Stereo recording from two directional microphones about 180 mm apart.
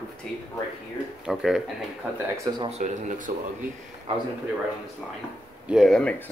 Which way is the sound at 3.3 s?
55° right (ahead or behind).